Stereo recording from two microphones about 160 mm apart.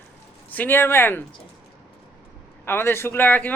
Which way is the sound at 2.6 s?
15° left (ahead or behind).